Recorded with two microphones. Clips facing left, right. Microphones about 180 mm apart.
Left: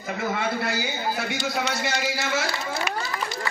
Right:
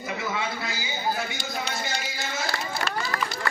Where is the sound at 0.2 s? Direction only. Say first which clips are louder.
Left 7 dB; 55° left (ahead or behind); by 2.5 s 75° left (ahead or behind).